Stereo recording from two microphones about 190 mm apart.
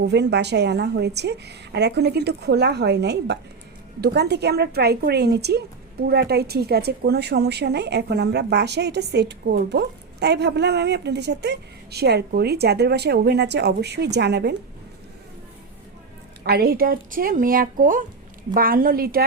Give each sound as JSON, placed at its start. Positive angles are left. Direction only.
{"t": 0.0, "sound": "a woman's voice", "side_deg": -65}
{"t": 16.4, "sound": "speech", "side_deg": -55}